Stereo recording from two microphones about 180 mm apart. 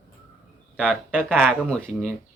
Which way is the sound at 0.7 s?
5° right (ahead or behind).